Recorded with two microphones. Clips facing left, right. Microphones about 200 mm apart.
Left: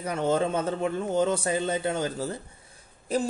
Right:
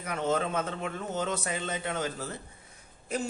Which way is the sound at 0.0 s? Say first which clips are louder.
Left 4 dB; 30° left (ahead or behind).